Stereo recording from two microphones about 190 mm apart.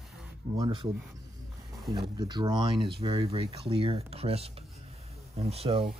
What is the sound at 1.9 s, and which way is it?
Speech, 20° right (ahead or behind).